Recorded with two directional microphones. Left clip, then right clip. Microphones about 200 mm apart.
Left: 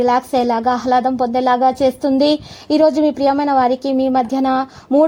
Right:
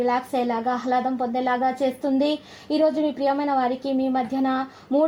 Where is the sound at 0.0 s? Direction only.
30° left (ahead or behind).